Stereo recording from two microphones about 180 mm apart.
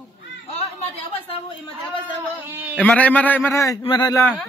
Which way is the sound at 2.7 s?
5° left (ahead or behind).